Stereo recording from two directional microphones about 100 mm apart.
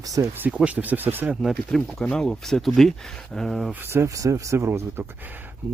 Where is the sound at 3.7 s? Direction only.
25° right (ahead or behind).